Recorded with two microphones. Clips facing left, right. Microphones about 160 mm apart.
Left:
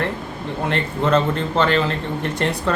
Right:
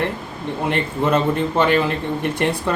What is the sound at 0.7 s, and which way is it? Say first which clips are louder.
A man's voice: even; 15° right (ahead or behind).